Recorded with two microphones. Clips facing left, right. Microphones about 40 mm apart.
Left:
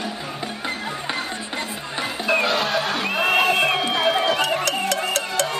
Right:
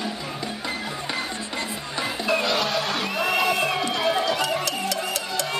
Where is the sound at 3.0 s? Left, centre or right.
Left.